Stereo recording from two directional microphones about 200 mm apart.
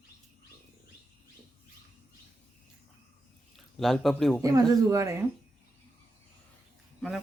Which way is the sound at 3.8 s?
Centre (ahead or behind).